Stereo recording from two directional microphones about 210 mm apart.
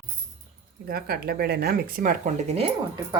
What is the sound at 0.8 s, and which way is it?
Speech, 45° right (ahead or behind).